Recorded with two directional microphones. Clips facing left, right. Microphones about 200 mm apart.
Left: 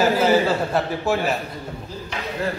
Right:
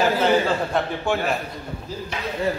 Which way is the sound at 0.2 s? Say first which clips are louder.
Left 2 dB; 10° left (ahead or behind).